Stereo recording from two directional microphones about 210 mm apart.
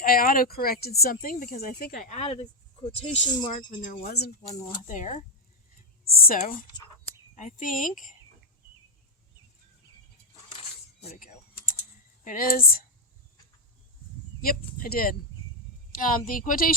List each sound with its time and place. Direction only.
0.0 s speech: 45° left (ahead or behind); by 3.7 s 20° left (ahead or behind)
3.7 s speech: 40° left (ahead or behind)
4.9 s a woman's voice: 35° left (ahead or behind)
10.5 s dishes: 30° left (ahead or behind)
11.2 s typing: 40° left (ahead or behind)
12.2 s a woman's voice: 40° left (ahead or behind)
14.4 s a woman's voice: 45° left (ahead or behind)